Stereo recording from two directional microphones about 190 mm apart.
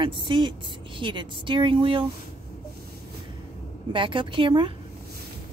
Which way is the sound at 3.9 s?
25° right (ahead or behind).